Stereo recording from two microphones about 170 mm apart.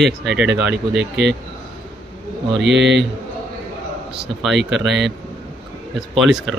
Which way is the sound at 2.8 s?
90° right.